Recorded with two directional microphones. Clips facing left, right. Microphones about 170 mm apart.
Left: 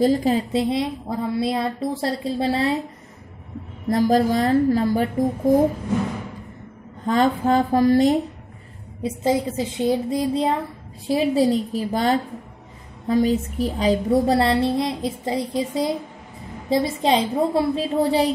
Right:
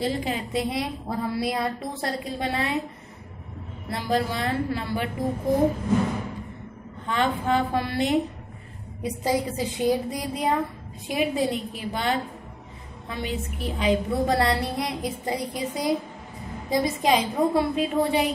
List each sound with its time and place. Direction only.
0.0 s a woman's voice: 40° left (ahead or behind)
3.9 s a woman's voice: 40° left (ahead or behind)
7.1 s a woman's voice: 40° left (ahead or behind)
9.0 s a woman's voice: 25° left (ahead or behind)